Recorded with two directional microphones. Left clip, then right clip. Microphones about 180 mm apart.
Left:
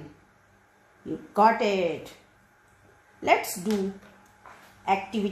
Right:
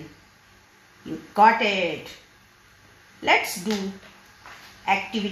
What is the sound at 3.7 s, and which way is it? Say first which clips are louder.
Speech: even; 85° left.